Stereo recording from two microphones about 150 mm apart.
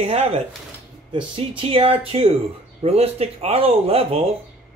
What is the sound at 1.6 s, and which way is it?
Speech, 35° right (ahead or behind).